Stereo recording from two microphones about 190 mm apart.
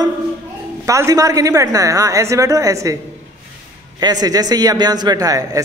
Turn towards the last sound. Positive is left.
turn(degrees=-20)  # may be behind; listen again after turning